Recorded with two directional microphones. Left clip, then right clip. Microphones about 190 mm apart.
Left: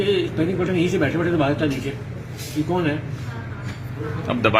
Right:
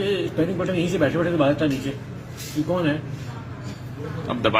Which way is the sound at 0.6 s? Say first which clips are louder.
Left 2 dB; 55° right (ahead or behind).